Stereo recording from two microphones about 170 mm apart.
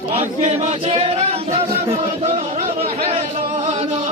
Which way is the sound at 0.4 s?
40° right (ahead or behind).